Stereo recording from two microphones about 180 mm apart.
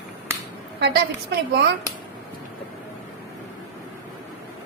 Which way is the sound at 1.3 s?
70° right (ahead or behind).